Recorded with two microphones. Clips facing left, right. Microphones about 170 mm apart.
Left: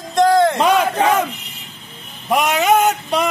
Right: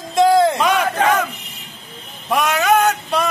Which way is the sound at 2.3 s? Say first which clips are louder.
Left 1 dB; 20° left (ahead or behind).